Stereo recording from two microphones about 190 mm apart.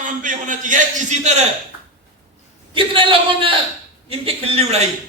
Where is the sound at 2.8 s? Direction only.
25° right (ahead or behind).